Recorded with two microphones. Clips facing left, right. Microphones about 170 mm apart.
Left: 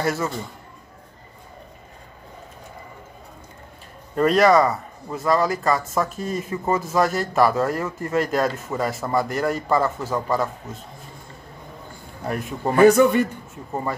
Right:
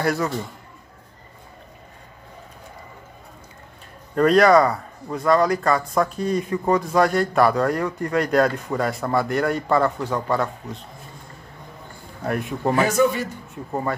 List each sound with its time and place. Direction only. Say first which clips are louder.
0.0 s speech: right 1 dB; centre (ahead or behind)
4.2 s speech: right 1 dB; centre (ahead or behind)
12.2 s speech: right 2 dB; centre (ahead or behind)
12.7 s a man's voice: left 9 dB; 55° left (ahead or behind)